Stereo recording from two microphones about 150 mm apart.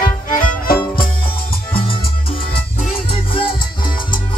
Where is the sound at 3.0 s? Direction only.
35° left (ahead or behind).